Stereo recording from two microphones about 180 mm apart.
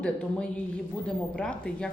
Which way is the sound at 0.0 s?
5° left (ahead or behind).